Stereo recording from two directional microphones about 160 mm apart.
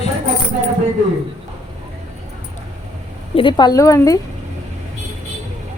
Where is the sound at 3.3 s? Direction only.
30° left (ahead or behind).